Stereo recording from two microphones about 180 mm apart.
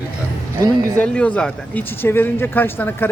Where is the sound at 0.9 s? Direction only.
5° left (ahead or behind).